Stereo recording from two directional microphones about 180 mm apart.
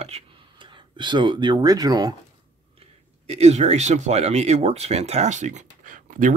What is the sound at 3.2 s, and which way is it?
Speech, 35° right (ahead or behind).